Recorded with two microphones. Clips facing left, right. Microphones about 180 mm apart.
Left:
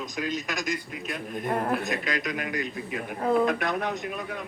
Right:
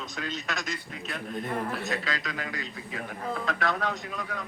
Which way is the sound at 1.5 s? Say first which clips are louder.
Left 7 dB; 55° left (ahead or behind).